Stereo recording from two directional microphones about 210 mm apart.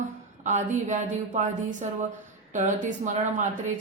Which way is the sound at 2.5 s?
35° right (ahead or behind).